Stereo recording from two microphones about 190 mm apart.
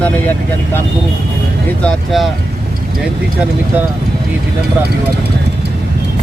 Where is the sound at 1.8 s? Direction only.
Centre (ahead or behind).